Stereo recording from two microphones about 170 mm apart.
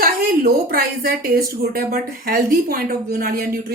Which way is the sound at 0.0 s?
60° right (ahead or behind).